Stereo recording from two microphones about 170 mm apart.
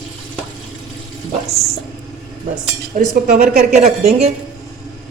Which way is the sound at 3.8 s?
40° right (ahead or behind).